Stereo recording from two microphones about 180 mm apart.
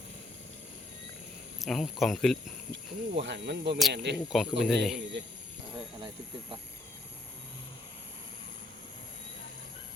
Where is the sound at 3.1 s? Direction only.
75° right (ahead or behind).